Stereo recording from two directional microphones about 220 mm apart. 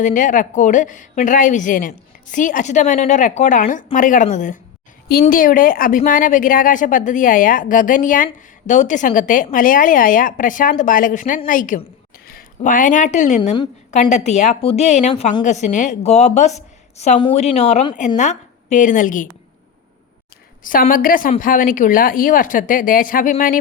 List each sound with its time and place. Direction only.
0.0 s a woman's voice: 35° left (ahead or behind)
20.7 s a woman's voice: 40° left (ahead or behind)